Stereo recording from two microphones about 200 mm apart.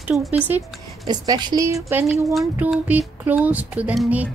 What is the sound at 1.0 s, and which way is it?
Speech, 20° right (ahead or behind).